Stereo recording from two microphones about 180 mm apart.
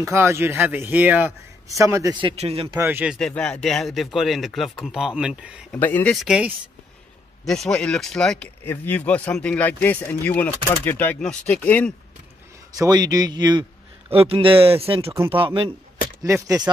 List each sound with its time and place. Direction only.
0.0 s a man's voice: 15° right (ahead or behind); by 2.8 s 30° right (ahead or behind)
2.8 s speech: 10° right (ahead or behind)
3.2 s speech: 5° left (ahead or behind)
5.7 s speech: 10° left (ahead or behind)
6.1 s speech: 5° right (ahead or behind)
12.7 s a man's voice: 20° right (ahead or behind)
16.2 s speech: 20° right (ahead or behind)